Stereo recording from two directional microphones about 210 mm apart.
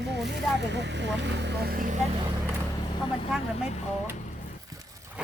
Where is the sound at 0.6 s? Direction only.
55° right (ahead or behind).